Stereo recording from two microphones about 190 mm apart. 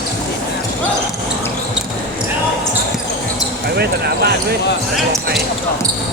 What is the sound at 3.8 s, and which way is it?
Basketball bounce, 55° right (ahead or behind).